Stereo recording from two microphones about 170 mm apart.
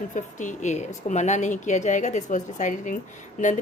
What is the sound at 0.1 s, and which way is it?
A woman's voice, 50° left (ahead or behind).